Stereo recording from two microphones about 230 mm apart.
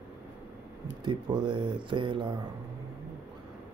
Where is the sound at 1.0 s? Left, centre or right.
Centre.